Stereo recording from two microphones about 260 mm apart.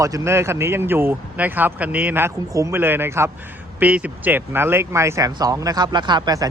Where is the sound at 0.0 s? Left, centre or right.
Centre.